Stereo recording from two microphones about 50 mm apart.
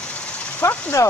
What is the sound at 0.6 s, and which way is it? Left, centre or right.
Speech, left.